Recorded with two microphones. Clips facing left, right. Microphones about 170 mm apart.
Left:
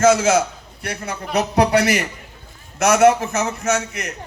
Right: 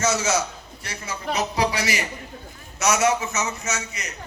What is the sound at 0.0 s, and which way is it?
A man's voice, 55° left (ahead or behind).